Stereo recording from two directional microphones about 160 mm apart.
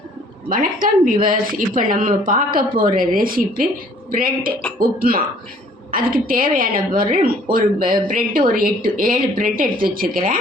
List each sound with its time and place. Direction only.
0.5 s a woman's voice: 60° right (ahead or behind)